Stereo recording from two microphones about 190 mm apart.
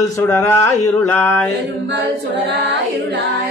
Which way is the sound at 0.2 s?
10° left (ahead or behind).